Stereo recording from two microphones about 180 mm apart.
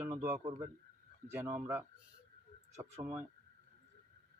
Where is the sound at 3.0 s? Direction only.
10° right (ahead or behind).